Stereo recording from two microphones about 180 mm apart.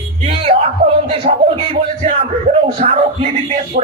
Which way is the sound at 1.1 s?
30° right (ahead or behind).